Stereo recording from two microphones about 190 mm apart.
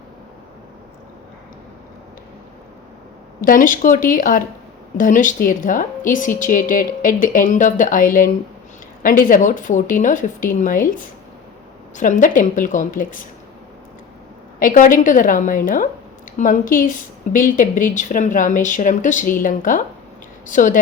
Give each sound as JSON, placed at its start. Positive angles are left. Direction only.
{"t": 3.4, "sound": "a woman's voice", "side_deg": 45}
{"t": 14.6, "sound": "a woman's voice", "side_deg": 45}